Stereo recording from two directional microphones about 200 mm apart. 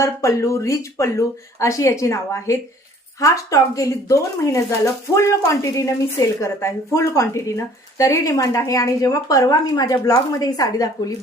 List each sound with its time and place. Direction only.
0.0 s a woman's voice: 15° left (ahead or behind)